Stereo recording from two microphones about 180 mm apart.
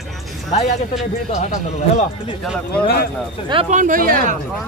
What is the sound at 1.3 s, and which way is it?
Speech, 45° left (ahead or behind).